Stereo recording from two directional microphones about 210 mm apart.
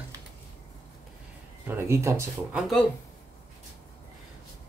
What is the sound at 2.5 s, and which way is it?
Speech, centre (ahead or behind).